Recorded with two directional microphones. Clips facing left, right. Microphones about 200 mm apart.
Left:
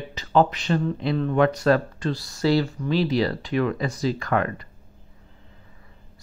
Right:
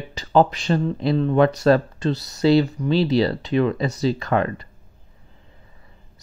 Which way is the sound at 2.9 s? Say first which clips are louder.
Right 2 dB; 30° right (ahead or behind).